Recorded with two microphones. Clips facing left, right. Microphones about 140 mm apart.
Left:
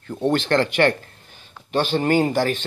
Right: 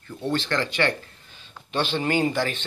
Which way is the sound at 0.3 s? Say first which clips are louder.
Left 6 dB; 55° left (ahead or behind).